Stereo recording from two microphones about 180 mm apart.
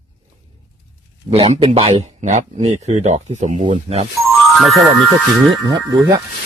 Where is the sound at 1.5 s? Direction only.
35° right (ahead or behind).